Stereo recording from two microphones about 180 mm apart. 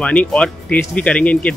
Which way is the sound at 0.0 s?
5° left (ahead or behind).